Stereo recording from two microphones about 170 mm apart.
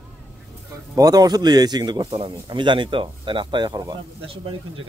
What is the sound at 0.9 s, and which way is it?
Speech, 20° right (ahead or behind).